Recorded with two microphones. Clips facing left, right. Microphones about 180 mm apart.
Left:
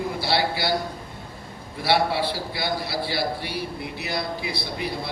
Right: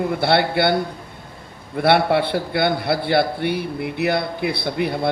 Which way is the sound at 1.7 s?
60° right (ahead or behind).